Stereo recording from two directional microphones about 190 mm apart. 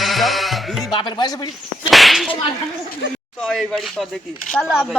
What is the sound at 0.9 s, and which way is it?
Speech, 25° left (ahead or behind).